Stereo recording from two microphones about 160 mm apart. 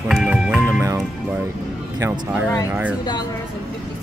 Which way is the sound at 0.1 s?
5° right (ahead or behind).